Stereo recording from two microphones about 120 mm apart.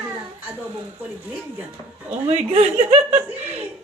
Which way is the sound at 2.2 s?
55° right (ahead or behind).